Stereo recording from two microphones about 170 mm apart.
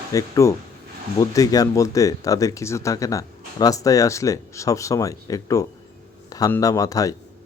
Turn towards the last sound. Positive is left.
turn(degrees=20)  # may be behind; listen again after turning